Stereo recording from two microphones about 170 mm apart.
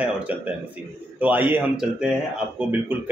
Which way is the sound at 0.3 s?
10° right (ahead or behind).